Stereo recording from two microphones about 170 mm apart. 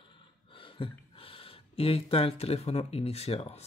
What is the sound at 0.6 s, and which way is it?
Speech, 30° left (ahead or behind).